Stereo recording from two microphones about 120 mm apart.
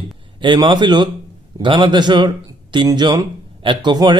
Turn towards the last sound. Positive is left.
turn(degrees=-40)  # may be behind; listen again after turning